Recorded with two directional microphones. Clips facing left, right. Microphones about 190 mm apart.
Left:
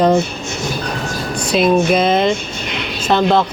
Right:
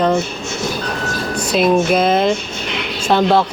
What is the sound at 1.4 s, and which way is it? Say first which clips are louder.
Speech: left 1 dB; 5° right (ahead or behind).